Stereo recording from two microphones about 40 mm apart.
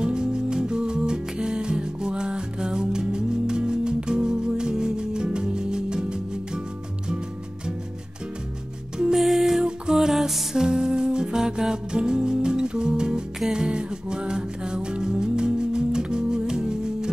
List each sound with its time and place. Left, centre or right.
0.0 s music: centre
8.9 s music: centre